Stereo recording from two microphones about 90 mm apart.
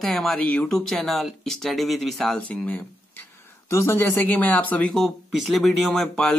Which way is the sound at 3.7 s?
30° left (ahead or behind).